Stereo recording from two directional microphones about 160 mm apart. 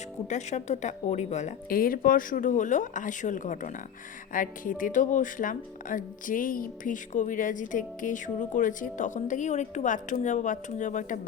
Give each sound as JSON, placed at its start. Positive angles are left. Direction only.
{"t": 0.3, "sound": "speech", "side_deg": 45}
{"t": 1.7, "sound": "speech", "side_deg": 65}
{"t": 4.3, "sound": "music", "side_deg": 55}
{"t": 4.8, "sound": "speech", "side_deg": 55}